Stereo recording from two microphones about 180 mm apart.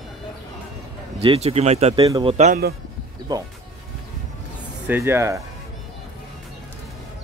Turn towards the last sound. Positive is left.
turn(degrees=-15)  # may be behind; listen again after turning